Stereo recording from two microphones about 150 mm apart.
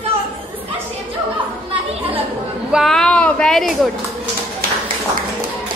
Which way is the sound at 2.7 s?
Centre (ahead or behind).